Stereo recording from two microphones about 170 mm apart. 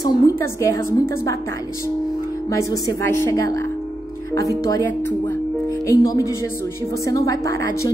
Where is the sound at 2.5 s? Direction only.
20° left (ahead or behind).